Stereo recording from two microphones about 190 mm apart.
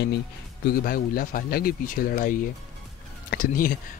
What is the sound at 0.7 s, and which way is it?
Speech, 50° left (ahead or behind).